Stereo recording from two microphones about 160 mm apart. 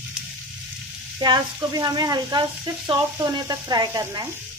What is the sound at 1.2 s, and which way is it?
Speech, 25° right (ahead or behind).